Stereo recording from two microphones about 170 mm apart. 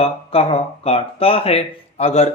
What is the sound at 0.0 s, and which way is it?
Speech, 35° left (ahead or behind).